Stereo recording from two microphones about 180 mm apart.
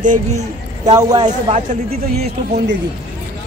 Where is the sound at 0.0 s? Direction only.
40° right (ahead or behind).